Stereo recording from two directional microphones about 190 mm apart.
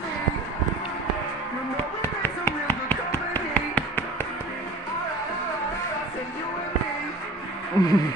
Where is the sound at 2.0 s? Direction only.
10° left (ahead or behind).